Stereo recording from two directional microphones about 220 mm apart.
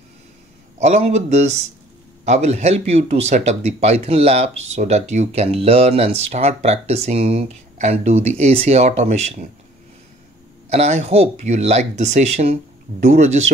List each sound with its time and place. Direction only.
0.7 s speech: 30° right (ahead or behind)
10.7 s speech: 30° right (ahead or behind)